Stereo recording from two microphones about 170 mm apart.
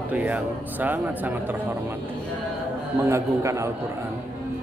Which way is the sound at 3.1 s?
15° right (ahead or behind).